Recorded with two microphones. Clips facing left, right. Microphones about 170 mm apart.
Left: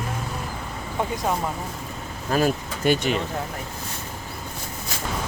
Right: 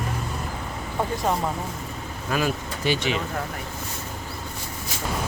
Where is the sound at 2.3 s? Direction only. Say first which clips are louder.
Left 3 dB; 40° left (ahead or behind).